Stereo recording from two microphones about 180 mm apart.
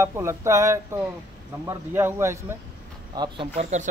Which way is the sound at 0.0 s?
15° right (ahead or behind).